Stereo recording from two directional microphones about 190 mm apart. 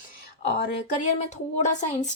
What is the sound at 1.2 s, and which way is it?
Speech, 40° left (ahead or behind).